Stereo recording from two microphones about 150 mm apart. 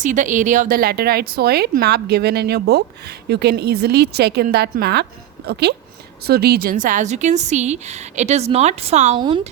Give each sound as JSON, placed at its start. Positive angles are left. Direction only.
{"t": 0.0, "sound": "a woman's voice", "side_deg": -55}
{"t": 9.1, "sound": "speech", "side_deg": -30}